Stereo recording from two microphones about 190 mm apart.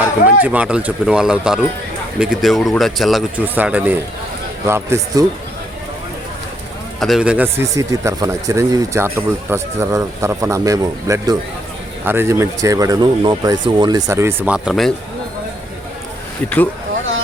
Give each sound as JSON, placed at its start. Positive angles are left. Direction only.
{"t": 0.4, "sound": "speech", "side_deg": -5}
{"t": 7.0, "sound": "speech", "side_deg": -5}